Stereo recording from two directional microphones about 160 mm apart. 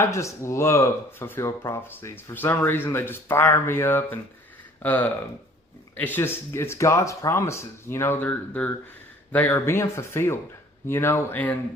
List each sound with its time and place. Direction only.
0.0 s speech: 20° left (ahead or behind)